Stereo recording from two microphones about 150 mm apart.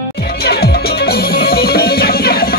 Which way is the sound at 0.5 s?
90° left.